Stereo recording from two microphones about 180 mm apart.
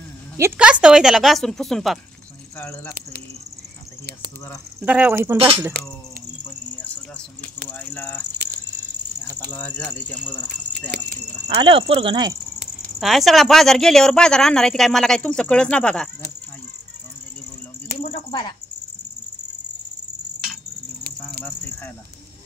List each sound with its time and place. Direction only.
0.4 s a woman's voice: 5° right (ahead or behind)
4.7 s speech: 10° right (ahead or behind)
7.9 s speech: 10° left (ahead or behind)
9.5 s speech: 10° left (ahead or behind)
11.4 s speech: 30° right (ahead or behind)
13.0 s a woman's voice: centre (ahead or behind)
18.0 s a sound: 30° left (ahead or behind)